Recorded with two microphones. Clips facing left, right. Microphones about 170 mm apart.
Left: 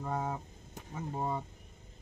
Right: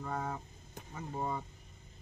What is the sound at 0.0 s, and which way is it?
Speech, 15° left (ahead or behind).